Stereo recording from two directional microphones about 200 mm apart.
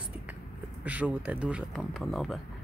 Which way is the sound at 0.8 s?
5° right (ahead or behind).